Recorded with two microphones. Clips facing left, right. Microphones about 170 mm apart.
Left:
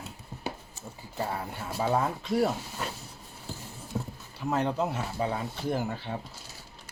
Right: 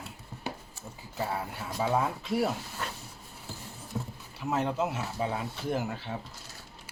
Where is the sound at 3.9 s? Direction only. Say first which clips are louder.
Left 2 dB; 15° left (ahead or behind).